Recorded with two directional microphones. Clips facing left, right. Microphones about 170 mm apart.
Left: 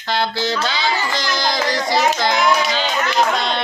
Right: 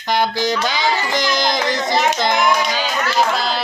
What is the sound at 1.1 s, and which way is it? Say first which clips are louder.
Speech: right 3 dB; 20° right (ahead or behind).